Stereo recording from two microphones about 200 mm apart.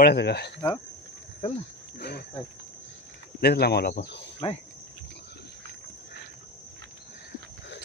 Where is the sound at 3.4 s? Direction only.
55° left (ahead or behind).